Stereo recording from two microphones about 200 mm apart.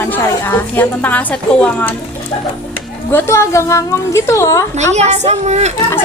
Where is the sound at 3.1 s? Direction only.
10° left (ahead or behind).